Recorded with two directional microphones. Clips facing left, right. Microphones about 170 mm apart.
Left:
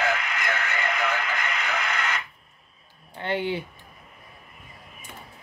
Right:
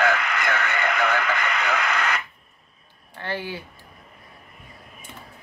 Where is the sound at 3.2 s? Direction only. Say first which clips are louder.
Left 4 dB; 20° left (ahead or behind).